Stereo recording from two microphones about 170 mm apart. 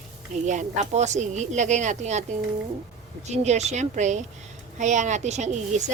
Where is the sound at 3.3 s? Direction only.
40° right (ahead or behind).